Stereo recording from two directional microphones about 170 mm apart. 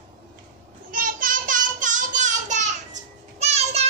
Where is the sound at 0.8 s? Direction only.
55° right (ahead or behind).